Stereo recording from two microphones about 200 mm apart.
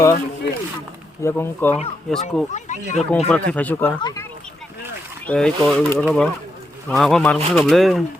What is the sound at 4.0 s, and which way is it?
Speech, 20° left (ahead or behind).